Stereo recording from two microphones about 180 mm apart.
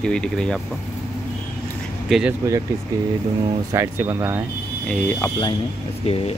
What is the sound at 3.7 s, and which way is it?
Speech, 15° right (ahead or behind).